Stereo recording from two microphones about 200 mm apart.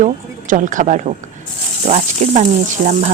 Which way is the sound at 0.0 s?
40° right (ahead or behind).